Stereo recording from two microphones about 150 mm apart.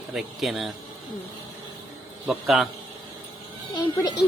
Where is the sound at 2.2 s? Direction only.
Centre (ahead or behind).